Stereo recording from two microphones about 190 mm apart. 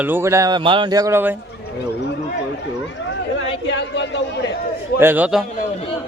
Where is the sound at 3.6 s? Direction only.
75° left (ahead or behind).